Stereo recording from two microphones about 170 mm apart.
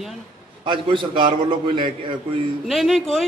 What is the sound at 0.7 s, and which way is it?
Speech, 30° right (ahead or behind).